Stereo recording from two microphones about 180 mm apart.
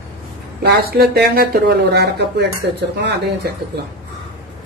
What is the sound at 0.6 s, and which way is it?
Speech, 60° right (ahead or behind).